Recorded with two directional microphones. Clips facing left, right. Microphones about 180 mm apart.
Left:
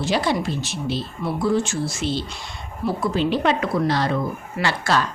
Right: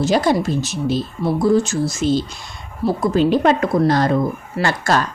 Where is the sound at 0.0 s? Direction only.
45° right (ahead or behind).